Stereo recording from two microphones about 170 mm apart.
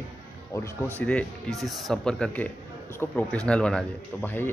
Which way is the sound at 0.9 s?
5° left (ahead or behind).